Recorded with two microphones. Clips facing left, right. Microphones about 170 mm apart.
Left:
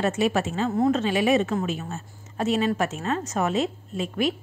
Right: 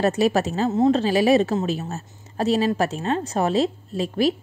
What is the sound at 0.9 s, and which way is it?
Speech, 35° right (ahead or behind).